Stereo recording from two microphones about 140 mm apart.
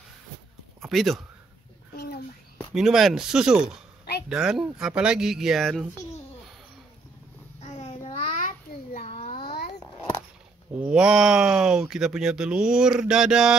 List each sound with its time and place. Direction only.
0.8 s speech: centre (ahead or behind)
2.7 s speech: 5° right (ahead or behind)
7.6 s babbling: 50° left (ahead or behind)
8.4 s a sound: 70° left (ahead or behind)
9.0 s babbling: 45° left (ahead or behind)
9.3 s babbling: 90° left
10.7 s speech: 10° right (ahead or behind)